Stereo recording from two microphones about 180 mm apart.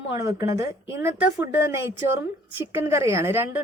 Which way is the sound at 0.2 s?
20° right (ahead or behind).